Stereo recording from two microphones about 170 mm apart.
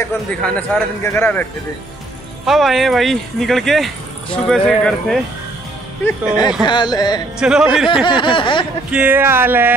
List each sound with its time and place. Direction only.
0.4 s speech: 5° left (ahead or behind)
2.4 s speech: centre (ahead or behind)
6.0 s a sound: 20° left (ahead or behind)
7.3 s speech: 5° right (ahead or behind)
7.9 s a sound: 25° left (ahead or behind)
8.9 s speech: 10° right (ahead or behind)